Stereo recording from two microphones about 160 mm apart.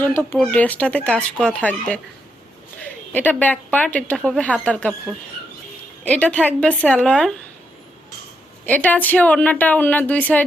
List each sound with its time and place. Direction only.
0.0 s a woman's voice: 15° left (ahead or behind)
6.1 s a woman's voice: 10° left (ahead or behind)
8.6 s a woman's voice: 10° left (ahead or behind)